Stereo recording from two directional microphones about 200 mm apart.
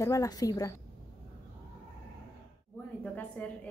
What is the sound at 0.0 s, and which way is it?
Speech, 15° left (ahead or behind).